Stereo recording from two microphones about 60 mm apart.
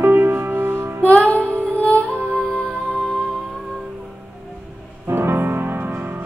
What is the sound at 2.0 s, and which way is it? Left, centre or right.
Music, right.